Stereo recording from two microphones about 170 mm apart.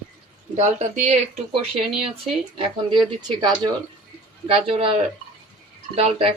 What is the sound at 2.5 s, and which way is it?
Speech, 30° right (ahead or behind).